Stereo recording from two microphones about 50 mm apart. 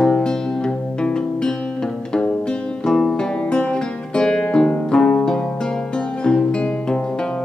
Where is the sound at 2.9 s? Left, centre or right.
Centre.